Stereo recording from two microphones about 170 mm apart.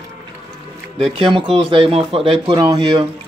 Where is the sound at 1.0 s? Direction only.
30° right (ahead or behind).